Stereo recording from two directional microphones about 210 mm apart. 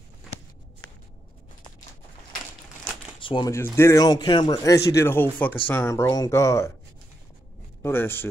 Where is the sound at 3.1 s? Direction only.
25° left (ahead or behind).